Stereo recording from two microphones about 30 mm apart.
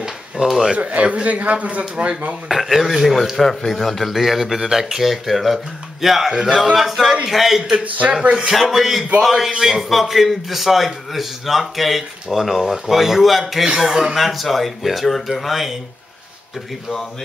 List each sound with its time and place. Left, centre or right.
0.5 s a man's voice: centre
0.7 s speech: right
1.3 s speech: right
2.4 s speech: centre
3.4 s speech: centre
4.1 s a man's voice: centre
8.1 s speech: right
8.5 s a man's voice: centre